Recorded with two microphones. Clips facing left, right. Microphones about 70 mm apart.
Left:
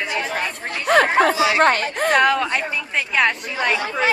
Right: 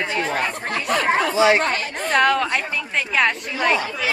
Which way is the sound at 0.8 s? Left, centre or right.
Left.